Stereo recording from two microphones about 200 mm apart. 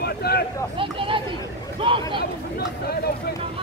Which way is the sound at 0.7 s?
25° right (ahead or behind).